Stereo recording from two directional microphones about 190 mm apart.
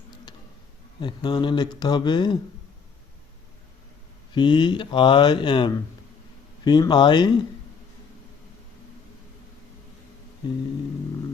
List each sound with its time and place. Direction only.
1.0 s speech: 25° left (ahead or behind)
4.4 s speech: 25° left (ahead or behind)